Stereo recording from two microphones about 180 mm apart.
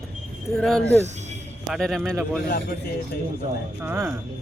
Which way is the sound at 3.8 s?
15° right (ahead or behind).